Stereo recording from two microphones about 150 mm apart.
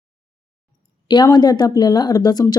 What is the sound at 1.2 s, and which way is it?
Speech, 25° left (ahead or behind).